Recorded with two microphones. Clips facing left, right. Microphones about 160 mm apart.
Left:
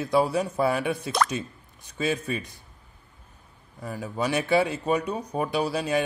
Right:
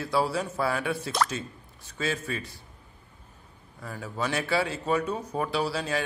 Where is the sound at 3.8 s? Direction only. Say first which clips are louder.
Left 3 dB; 15° left (ahead or behind).